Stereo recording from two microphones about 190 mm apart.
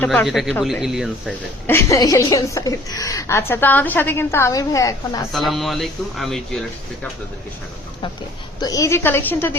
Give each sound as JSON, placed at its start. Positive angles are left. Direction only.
{"t": 0.0, "sound": "speech", "side_deg": 5}
{"t": 1.6, "sound": "a woman's voice", "side_deg": 15}
{"t": 5.3, "sound": "speech", "side_deg": 0}
{"t": 8.6, "sound": "a woman's voice", "side_deg": 15}